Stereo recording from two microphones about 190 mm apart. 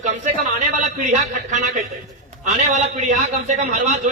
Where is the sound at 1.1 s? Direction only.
40° right (ahead or behind).